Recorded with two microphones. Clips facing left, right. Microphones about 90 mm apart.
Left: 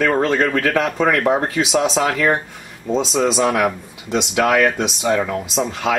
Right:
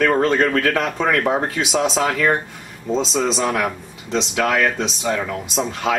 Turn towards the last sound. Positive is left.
turn(degrees=0)  # may be behind; listen again after turning